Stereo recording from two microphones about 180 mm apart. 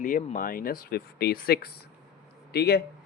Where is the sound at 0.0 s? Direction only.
50° left (ahead or behind).